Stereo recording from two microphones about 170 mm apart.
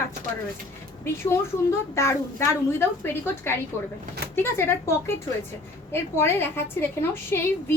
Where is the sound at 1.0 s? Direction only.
15° left (ahead or behind).